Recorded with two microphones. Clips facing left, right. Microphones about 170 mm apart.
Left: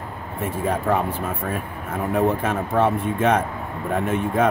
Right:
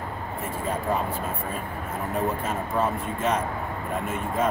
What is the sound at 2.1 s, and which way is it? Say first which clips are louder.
Speech: left 7 dB; 70° left (ahead or behind).